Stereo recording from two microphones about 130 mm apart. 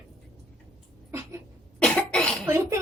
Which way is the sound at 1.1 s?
20° right (ahead or behind).